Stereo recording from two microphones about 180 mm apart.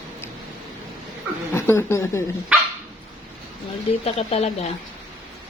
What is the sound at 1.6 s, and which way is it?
Speech, 15° left (ahead or behind).